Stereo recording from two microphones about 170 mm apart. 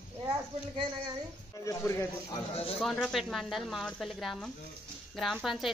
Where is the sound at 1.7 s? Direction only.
20° left (ahead or behind).